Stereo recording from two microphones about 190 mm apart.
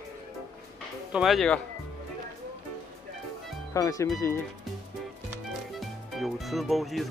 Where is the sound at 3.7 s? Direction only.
15° left (ahead or behind).